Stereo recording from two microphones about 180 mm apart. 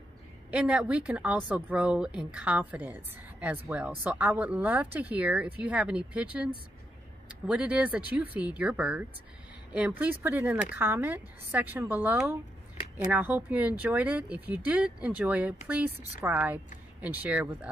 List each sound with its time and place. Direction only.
0.5 s speech: 5° right (ahead or behind)